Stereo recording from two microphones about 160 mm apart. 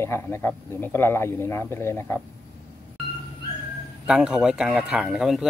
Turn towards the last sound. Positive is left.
turn(degrees=-5)  # may be behind; listen again after turning